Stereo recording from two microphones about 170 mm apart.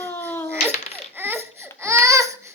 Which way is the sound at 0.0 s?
10° left (ahead or behind).